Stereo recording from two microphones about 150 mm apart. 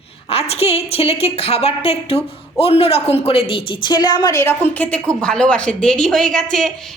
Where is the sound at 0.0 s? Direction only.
40° left (ahead or behind).